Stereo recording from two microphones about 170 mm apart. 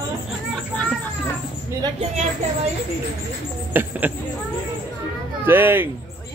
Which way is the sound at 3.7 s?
10° right (ahead or behind).